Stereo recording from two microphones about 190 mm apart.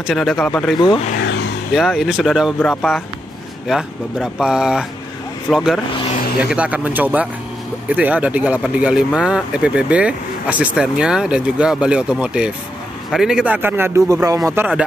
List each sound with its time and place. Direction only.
0.0 s speech: centre (ahead or behind)
1.1 s vehicle: 65° left (ahead or behind)
1.7 s speech: centre (ahead or behind)